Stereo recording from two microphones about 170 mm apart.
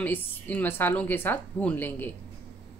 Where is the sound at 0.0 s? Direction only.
10° left (ahead or behind).